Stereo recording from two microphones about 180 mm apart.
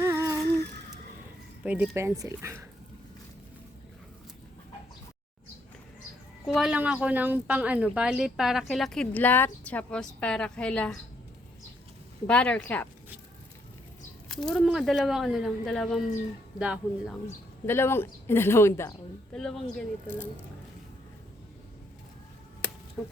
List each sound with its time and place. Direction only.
0.0 s humming: 15° right (ahead or behind)
1.6 s speech: 5° right (ahead or behind)
6.5 s speech: centre (ahead or behind)
12.3 s a woman's voice: 5° left (ahead or behind)
14.3 s speech: 5° left (ahead or behind)
17.7 s a woman's voice: 15° left (ahead or behind)
19.4 s speech: 5° left (ahead or behind)